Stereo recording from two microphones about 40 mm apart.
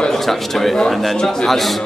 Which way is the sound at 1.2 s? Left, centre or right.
Centre.